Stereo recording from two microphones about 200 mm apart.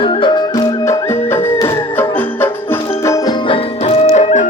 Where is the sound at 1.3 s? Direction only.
10° left (ahead or behind).